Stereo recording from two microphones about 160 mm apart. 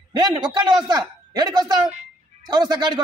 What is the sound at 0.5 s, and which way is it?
A man's voice, 25° right (ahead or behind).